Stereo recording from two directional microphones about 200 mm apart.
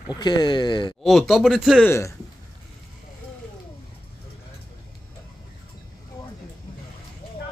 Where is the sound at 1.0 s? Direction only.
Centre (ahead or behind).